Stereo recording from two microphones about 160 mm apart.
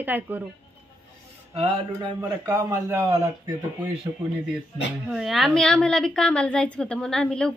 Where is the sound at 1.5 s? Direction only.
35° right (ahead or behind).